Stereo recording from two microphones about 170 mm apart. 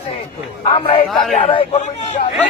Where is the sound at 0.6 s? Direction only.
35° left (ahead or behind).